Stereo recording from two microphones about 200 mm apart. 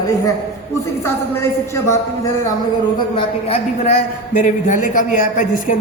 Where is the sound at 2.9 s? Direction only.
25° left (ahead or behind).